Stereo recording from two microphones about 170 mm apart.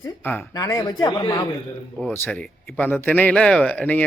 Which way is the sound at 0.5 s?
20° left (ahead or behind).